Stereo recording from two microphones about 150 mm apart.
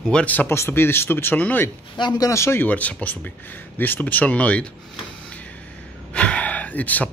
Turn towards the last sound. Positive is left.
turn(degrees=10)  # may be behind; listen again after turning